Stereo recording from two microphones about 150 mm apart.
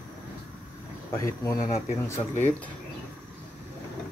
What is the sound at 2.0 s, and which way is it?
Speech, 10° left (ahead or behind).